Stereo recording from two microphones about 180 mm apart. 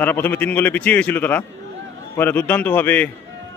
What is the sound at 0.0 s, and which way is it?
A man's voice, 10° left (ahead or behind).